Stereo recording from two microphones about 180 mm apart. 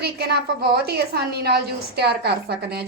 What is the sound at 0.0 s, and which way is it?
A woman's voice, 60° right (ahead or behind).